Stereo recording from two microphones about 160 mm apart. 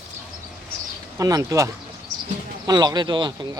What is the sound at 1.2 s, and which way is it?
Speech, 20° right (ahead or behind).